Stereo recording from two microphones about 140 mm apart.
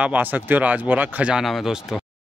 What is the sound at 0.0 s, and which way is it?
Speech, 10° right (ahead or behind).